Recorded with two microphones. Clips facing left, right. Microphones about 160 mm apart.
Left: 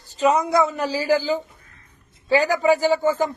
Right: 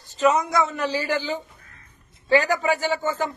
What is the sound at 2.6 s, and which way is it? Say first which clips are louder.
Speech: left 6 dB; 35° left (ahead or behind).